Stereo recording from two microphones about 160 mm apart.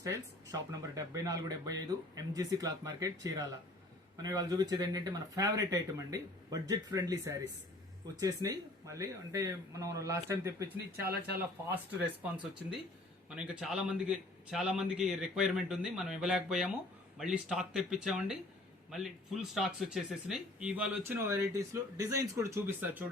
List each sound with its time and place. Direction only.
0.0 s speech: 20° right (ahead or behind)
11.0 s speech: 75° right (ahead or behind)
13.3 s a man's voice: 5° right (ahead or behind)